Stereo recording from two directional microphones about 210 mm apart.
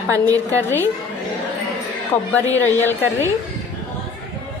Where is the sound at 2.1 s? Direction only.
10° left (ahead or behind).